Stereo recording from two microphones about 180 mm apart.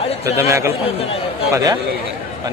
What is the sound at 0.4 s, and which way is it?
Speech, 15° right (ahead or behind).